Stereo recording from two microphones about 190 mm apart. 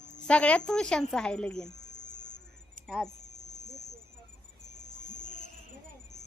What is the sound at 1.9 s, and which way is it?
Insect, 40° left (ahead or behind).